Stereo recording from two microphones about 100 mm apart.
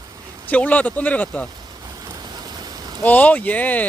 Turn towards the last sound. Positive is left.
turn(degrees=15)  # may be behind; listen again after turning